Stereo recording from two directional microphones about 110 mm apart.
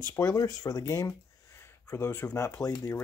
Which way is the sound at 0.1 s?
30° left (ahead or behind).